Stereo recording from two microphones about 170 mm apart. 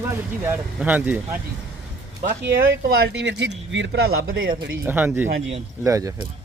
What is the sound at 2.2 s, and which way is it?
Speech, 60° right (ahead or behind).